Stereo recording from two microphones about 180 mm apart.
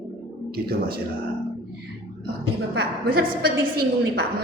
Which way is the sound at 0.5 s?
60° right (ahead or behind).